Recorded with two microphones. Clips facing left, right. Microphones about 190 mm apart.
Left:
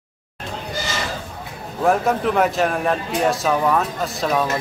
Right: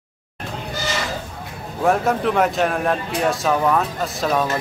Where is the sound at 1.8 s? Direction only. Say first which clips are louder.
Even; centre (ahead or behind).